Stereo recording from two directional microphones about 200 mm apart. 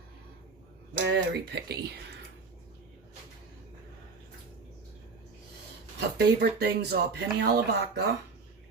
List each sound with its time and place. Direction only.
0.9 s speech: 60° right (ahead or behind)
6.1 s speech: 55° right (ahead or behind)